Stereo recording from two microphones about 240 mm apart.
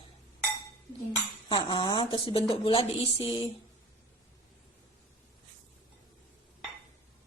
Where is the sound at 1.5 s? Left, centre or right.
Centre.